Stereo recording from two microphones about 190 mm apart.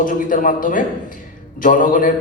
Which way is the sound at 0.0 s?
45° left (ahead or behind).